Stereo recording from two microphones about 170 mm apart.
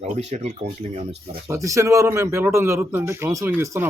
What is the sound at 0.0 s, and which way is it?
Speech, 40° right (ahead or behind).